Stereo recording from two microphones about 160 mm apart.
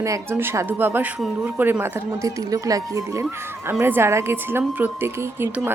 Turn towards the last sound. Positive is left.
turn(degrees=-15)  # may be behind; listen again after turning